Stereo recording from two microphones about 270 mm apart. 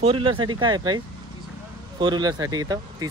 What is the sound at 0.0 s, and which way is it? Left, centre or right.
Speech, centre.